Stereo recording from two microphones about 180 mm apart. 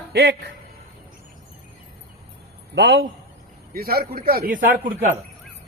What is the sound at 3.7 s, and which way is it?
Speech, 55° right (ahead or behind).